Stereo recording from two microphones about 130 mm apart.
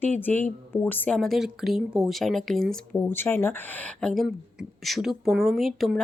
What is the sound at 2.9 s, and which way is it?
Speech, 15° left (ahead or behind).